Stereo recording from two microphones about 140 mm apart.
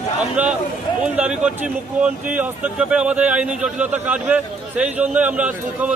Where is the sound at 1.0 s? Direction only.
5° right (ahead or behind).